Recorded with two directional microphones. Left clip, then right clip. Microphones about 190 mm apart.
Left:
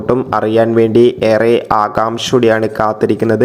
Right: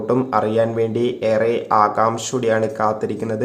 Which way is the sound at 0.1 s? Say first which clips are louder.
Left 6 dB; 35° left (ahead or behind).